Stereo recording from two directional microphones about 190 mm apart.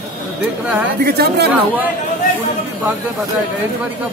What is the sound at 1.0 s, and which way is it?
Speech, 55° right (ahead or behind).